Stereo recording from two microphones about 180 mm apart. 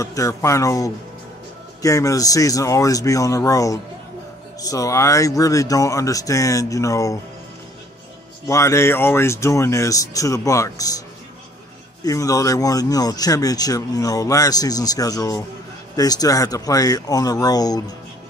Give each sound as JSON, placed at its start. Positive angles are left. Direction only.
{"t": 0.0, "sound": "speech", "side_deg": 15}
{"t": 8.5, "sound": "speech", "side_deg": 15}
{"t": 12.0, "sound": "speech", "side_deg": 20}